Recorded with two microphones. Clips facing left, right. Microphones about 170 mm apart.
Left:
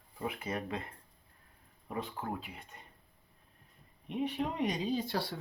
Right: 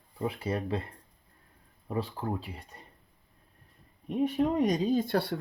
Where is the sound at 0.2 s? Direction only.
30° right (ahead or behind).